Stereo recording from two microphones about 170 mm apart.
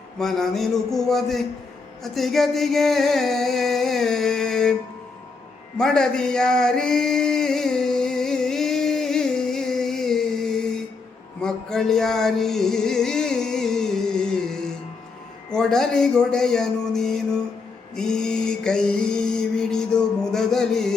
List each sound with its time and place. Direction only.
0.2 s speech: centre (ahead or behind)
2.1 s a sound: centre (ahead or behind)
5.7 s a sound: 5° left (ahead or behind)
11.4 s music: 5° left (ahead or behind)
15.5 s speech: 5° left (ahead or behind)
17.9 s mantra: 5° left (ahead or behind)